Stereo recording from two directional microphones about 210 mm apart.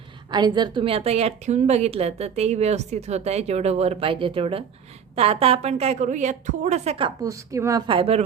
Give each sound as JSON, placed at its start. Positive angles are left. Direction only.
{"t": 0.3, "sound": "a woman's voice", "side_deg": -20}
{"t": 7.2, "sound": "speech", "side_deg": -15}